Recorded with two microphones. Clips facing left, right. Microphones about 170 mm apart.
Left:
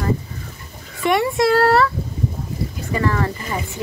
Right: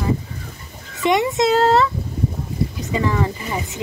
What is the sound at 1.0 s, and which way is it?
Speech, 20° right (ahead or behind).